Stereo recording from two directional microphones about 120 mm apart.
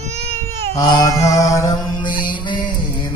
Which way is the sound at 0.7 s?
25° left (ahead or behind).